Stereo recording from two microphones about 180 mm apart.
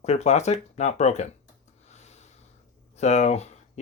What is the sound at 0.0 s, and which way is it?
Speech, 35° left (ahead or behind).